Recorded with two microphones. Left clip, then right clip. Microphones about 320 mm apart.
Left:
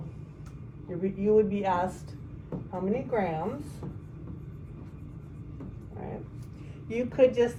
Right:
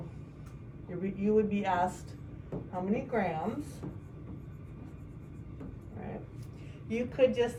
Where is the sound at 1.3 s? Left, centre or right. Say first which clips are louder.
Left 2 dB; centre.